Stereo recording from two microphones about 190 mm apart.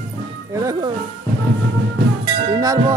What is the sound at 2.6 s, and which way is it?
Speech, 20° right (ahead or behind).